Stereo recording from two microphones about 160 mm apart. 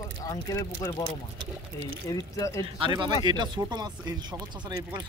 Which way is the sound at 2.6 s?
35° right (ahead or behind).